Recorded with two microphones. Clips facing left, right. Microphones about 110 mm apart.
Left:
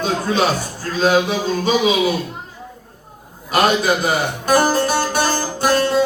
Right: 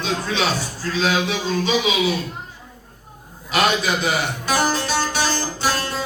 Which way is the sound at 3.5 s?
45° left (ahead or behind).